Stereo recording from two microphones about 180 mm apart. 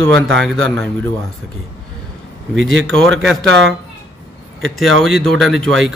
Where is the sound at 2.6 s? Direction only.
90° right.